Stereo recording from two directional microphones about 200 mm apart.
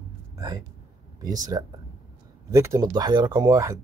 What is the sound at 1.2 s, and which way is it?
Speech, 20° right (ahead or behind).